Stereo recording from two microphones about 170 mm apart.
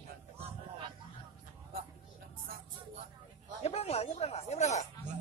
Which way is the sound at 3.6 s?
35° left (ahead or behind).